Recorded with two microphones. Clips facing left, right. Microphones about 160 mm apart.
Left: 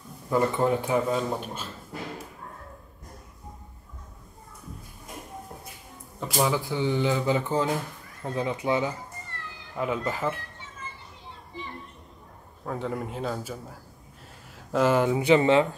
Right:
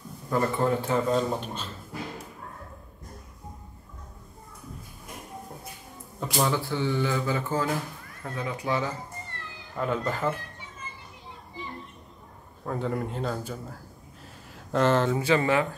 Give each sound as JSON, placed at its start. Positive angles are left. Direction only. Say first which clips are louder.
{"t": 0.3, "sound": "speech", "louder": "left 2 dB", "side_deg": 15}
{"t": 6.1, "sound": "speech", "louder": "left 1 dB", "side_deg": 5}
{"t": 9.8, "sound": "speech", "louder": "even", "side_deg": 5}
{"t": 12.6, "sound": "a man's voice", "louder": "right 1 dB", "side_deg": 0}